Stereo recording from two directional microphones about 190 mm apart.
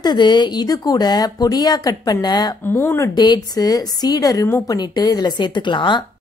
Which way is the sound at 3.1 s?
20° left (ahead or behind).